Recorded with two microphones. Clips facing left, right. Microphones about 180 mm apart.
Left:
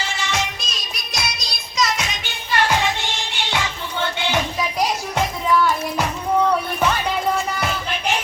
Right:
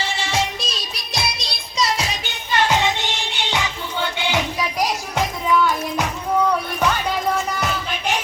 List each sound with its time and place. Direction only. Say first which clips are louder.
0.0 s music: right 2 dB; 30° right (ahead or behind)
2.5 s music: right 1 dB; 20° right (ahead or behind)
4.8 s music: left 1 dB; centre (ahead or behind)